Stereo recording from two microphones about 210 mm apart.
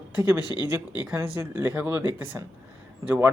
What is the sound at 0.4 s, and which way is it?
Speech, 20° left (ahead or behind).